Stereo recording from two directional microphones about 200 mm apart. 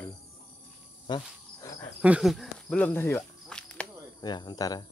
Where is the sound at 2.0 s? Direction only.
5° right (ahead or behind).